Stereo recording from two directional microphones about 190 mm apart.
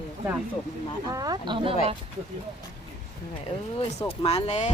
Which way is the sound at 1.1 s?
20° right (ahead or behind).